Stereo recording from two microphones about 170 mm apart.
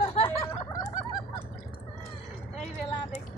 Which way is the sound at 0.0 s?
40° left (ahead or behind).